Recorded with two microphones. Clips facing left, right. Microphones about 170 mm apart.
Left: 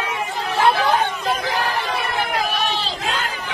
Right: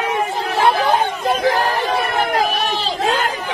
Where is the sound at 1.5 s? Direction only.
45° right (ahead or behind).